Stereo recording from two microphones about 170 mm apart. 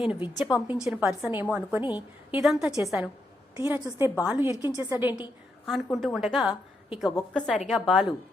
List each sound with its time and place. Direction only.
0.0 s a woman's voice: 5° right (ahead or behind)
1.8 s a woman's voice: 25° left (ahead or behind)
2.3 s a woman's voice: centre (ahead or behind)
3.6 s a woman's voice: 15° right (ahead or behind)
5.6 s a woman's voice: centre (ahead or behind)